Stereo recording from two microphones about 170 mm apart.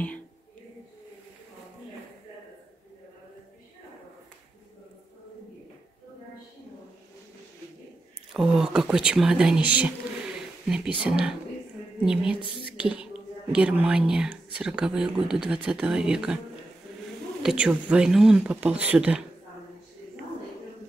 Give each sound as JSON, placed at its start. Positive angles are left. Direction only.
{"t": 8.3, "sound": "speech", "side_deg": -5}
{"t": 17.4, "sound": "speech", "side_deg": -5}